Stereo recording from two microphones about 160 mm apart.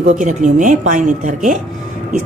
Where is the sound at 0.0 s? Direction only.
50° right (ahead or behind).